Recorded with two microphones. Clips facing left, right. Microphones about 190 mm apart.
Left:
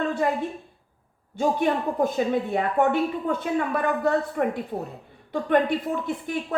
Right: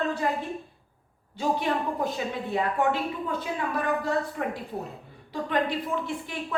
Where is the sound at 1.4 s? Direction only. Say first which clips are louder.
Left 4 dB; 50° left (ahead or behind).